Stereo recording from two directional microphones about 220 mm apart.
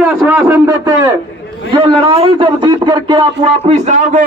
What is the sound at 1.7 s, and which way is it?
A man's voice, 25° right (ahead or behind).